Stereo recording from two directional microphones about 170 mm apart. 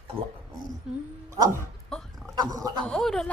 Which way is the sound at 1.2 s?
15° right (ahead or behind).